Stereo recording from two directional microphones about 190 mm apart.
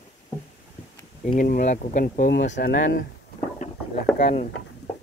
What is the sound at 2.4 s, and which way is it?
Speech, 65° left (ahead or behind).